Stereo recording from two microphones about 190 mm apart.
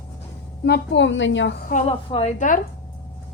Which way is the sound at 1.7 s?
35° left (ahead or behind).